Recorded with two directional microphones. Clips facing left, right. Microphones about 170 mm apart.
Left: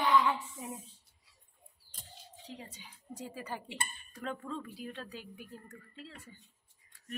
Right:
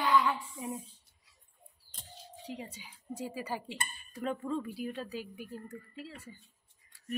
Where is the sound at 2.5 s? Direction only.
10° right (ahead or behind).